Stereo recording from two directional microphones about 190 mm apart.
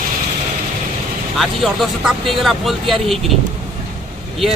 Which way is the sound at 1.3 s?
Centre (ahead or behind).